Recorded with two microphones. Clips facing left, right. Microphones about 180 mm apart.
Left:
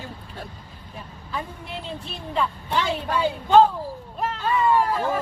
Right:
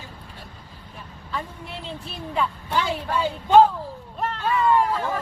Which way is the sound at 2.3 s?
10° right (ahead or behind).